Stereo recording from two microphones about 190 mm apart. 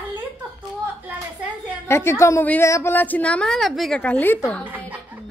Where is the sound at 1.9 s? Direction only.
15° left (ahead or behind).